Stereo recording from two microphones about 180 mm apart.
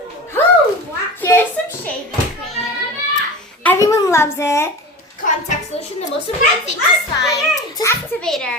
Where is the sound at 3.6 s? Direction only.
15° left (ahead or behind).